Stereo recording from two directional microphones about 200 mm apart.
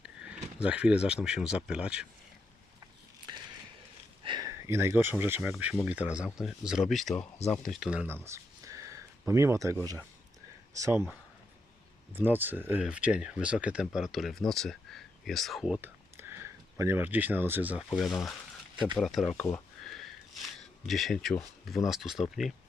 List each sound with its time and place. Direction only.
0.6 s speech: 5° right (ahead or behind)
4.2 s speech: 20° right (ahead or behind)
12.1 s speech: 10° right (ahead or behind)
19.8 s sniff: centre (ahead or behind)
20.8 s speech: centre (ahead or behind)